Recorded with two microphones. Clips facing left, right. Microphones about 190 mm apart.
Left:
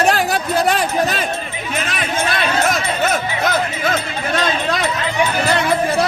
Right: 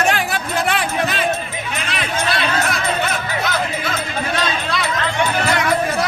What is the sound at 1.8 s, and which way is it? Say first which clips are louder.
Music: even; 45° left (ahead or behind).